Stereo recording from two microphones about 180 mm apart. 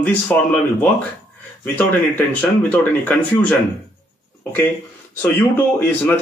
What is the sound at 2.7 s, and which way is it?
Speech, 5° left (ahead or behind).